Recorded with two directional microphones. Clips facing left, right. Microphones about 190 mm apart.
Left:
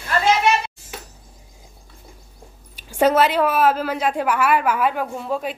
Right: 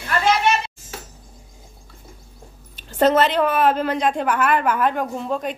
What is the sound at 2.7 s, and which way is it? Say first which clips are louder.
A woman's voice: even; 10° left (ahead or behind).